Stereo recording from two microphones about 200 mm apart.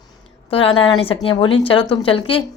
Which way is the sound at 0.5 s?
25° left (ahead or behind).